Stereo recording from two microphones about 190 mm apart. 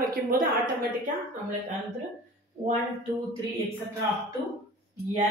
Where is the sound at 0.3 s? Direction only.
50° right (ahead or behind).